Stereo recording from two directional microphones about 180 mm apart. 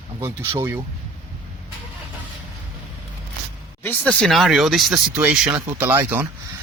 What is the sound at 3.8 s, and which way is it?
Speech, 10° left (ahead or behind).